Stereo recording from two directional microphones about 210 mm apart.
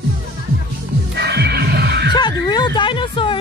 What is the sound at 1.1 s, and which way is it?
Music, 50° right (ahead or behind).